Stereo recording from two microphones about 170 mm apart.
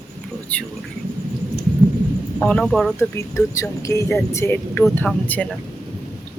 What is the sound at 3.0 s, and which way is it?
Speech, 20° left (ahead or behind).